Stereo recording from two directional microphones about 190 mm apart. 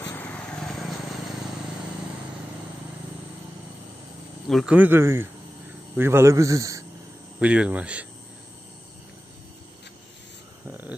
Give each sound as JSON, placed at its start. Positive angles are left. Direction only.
{"t": 0.0, "sound": "a sound", "side_deg": 10}
{"t": 4.5, "sound": "speech", "side_deg": -5}
{"t": 7.3, "sound": "speech", "side_deg": -5}
{"t": 10.7, "sound": "speech", "side_deg": -10}